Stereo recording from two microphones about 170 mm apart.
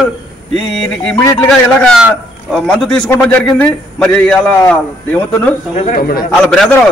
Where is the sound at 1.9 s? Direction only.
5° right (ahead or behind).